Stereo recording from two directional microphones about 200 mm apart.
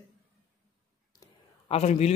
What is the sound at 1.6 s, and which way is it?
Speech, 30° left (ahead or behind).